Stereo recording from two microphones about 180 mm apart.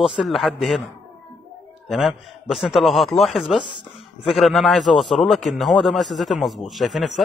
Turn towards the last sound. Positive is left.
turn(degrees=0)  # may be behind; listen again after turning